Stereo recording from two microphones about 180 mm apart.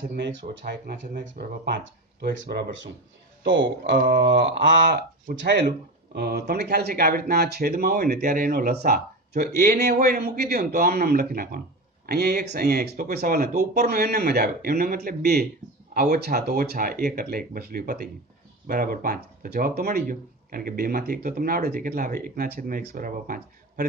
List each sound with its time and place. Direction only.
0.2 s speech: 85° right; by 1.8 s 60° right (ahead or behind)
2.2 s speech: 80° right
4.0 s speech: 70° right (ahead or behind)
5.5 s speech: 60° right (ahead or behind)